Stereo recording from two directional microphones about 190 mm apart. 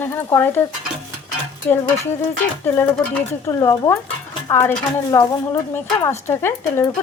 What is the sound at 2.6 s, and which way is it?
Speech, 10° left (ahead or behind).